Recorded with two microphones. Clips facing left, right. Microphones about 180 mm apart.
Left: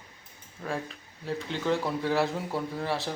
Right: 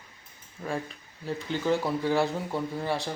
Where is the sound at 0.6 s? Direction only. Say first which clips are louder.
Right 1 dB; centre (ahead or behind).